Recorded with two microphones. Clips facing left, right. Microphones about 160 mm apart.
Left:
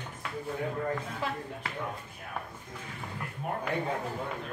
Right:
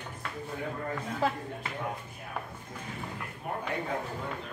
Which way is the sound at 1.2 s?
40° right (ahead or behind).